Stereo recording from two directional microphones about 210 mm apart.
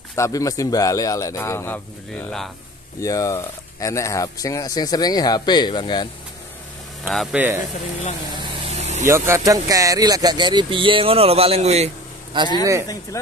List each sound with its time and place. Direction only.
0.1 s speech: 15° left (ahead or behind)
3.0 s speech: 15° left (ahead or behind)
7.1 s speech: 5° right (ahead or behind)
8.6 s vehicle: 30° right (ahead or behind)
9.0 s speech: 15° right (ahead or behind)
13.1 s speech: 15° left (ahead or behind)